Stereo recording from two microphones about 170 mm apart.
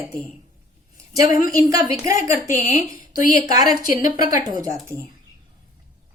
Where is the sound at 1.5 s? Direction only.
20° right (ahead or behind).